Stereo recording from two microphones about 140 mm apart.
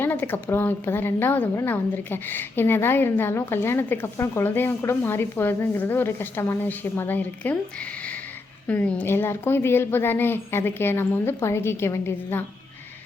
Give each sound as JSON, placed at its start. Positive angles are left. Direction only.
{"t": 0.0, "sound": "a woman's voice", "side_deg": 15}
{"t": 8.6, "sound": "a woman's voice", "side_deg": 10}